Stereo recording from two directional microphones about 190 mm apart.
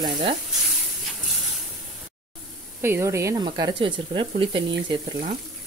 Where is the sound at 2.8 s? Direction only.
15° right (ahead or behind).